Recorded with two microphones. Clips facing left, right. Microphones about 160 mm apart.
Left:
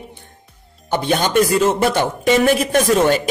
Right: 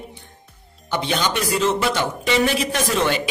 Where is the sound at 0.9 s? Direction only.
50° left (ahead or behind).